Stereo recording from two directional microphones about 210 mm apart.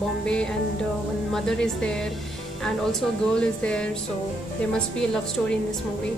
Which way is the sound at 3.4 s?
5° left (ahead or behind).